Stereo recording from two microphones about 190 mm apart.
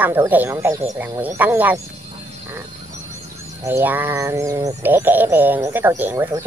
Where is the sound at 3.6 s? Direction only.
10° right (ahead or behind).